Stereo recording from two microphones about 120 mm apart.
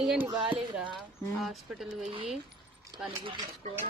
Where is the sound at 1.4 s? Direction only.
Centre (ahead or behind).